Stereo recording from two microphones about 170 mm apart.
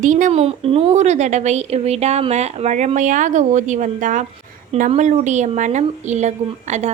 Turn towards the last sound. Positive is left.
turn(degrees=-45)  # may be behind; listen again after turning